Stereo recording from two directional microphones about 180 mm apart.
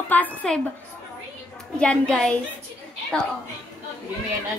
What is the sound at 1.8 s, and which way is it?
Child singing, 5° left (ahead or behind).